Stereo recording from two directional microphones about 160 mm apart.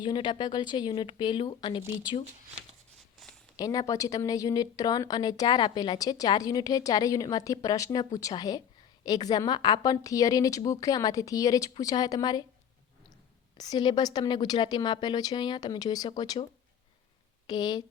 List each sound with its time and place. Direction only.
0.0 s speech: 30° left (ahead or behind)
3.6 s speech: 20° left (ahead or behind)
13.6 s speech: 25° left (ahead or behind)